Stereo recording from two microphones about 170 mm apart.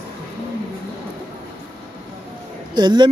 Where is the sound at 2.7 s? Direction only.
25° right (ahead or behind).